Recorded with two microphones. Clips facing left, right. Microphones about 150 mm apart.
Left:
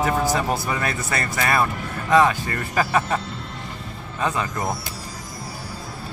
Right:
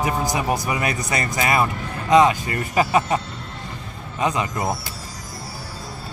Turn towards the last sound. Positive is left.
turn(degrees=-15)  # may be behind; listen again after turning